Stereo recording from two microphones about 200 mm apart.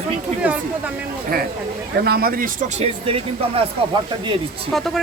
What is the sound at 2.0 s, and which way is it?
Speech, 50° right (ahead or behind).